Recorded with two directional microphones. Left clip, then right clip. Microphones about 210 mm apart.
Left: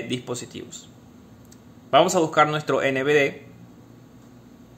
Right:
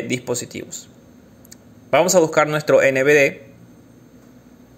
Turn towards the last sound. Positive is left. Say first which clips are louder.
# right 6 dB
turn(degrees=-15)  # may be behind; listen again after turning